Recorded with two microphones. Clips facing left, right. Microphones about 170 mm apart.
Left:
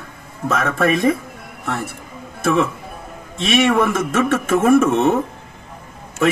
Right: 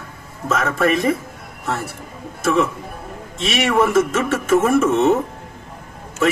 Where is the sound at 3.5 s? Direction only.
55° left (ahead or behind).